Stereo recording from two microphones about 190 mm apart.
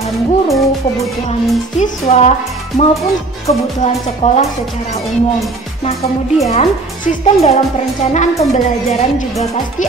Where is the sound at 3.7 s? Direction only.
35° left (ahead or behind).